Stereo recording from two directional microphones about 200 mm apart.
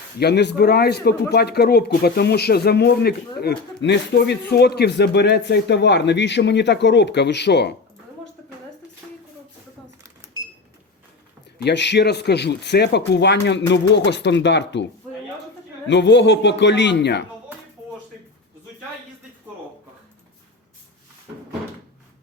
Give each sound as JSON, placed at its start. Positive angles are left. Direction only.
{"t": 0.2, "sound": "a man's voice", "side_deg": 55}
{"t": 11.6, "sound": "a man's voice", "side_deg": 60}
{"t": 15.9, "sound": "a man's voice", "side_deg": 60}